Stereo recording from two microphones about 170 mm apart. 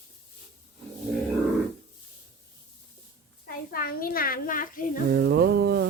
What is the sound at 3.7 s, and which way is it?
A child's voice, 60° left (ahead or behind).